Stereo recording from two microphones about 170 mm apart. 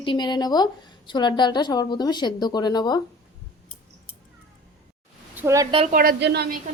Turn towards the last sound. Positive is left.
turn(degrees=-75)  # may be behind; listen again after turning